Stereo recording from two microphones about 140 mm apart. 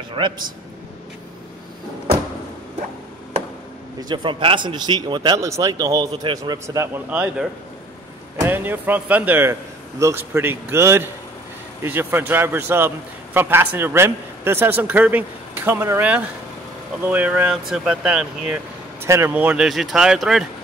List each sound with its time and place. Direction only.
0.1 s a man's voice: 35° right (ahead or behind)
4.1 s a man's voice: 35° right (ahead or behind); by 18.6 s 5° right (ahead or behind)
19.0 s speech: 20° right (ahead or behind); by 20.4 s 5° right (ahead or behind)